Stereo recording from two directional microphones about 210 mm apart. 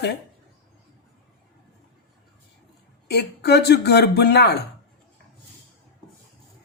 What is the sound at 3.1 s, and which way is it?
Speech, 50° left (ahead or behind).